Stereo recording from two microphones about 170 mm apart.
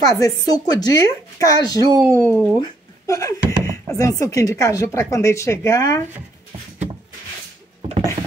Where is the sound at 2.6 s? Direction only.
20° left (ahead or behind).